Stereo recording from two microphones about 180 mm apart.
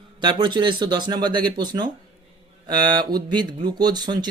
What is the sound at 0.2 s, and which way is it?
Speech, 25° right (ahead or behind).